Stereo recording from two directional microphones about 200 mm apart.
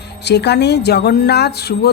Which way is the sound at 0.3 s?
55° left (ahead or behind).